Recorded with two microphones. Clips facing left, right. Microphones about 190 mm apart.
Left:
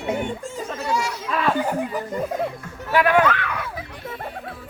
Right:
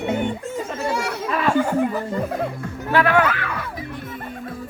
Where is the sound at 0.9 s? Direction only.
60° right (ahead or behind).